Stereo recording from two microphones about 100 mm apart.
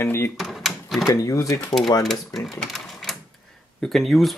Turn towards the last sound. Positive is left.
turn(degrees=0)  # may be behind; listen again after turning